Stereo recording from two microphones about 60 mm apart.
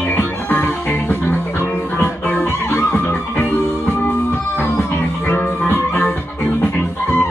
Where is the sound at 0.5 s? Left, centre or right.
Left.